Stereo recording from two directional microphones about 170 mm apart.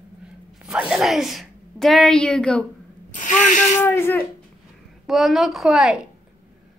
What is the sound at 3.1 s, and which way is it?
Speech, 45° left (ahead or behind).